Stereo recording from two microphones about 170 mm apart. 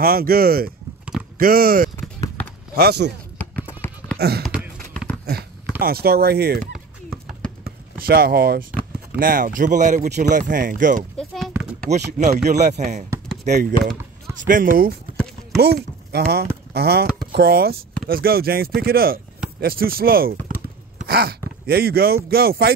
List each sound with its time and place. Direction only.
0.0 s speech: 60° right (ahead or behind)
2.0 s basketball bounce: 20° left (ahead or behind)
2.7 s speech: 70° right (ahead or behind)
3.3 s a sound: 10° left (ahead or behind)
4.2 s speech: 70° right (ahead or behind)
5.8 s speech: 65° right (ahead or behind)
8.0 s speech: 65° right (ahead or behind)
11.1 s a sound: centre (ahead or behind)
11.9 s speech: 40° right (ahead or behind)
14.3 s speech: 50° right (ahead or behind)
15.5 s speech: 70° right (ahead or behind)